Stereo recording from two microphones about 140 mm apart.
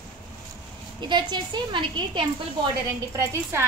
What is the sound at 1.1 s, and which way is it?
A woman's voice, 35° right (ahead or behind).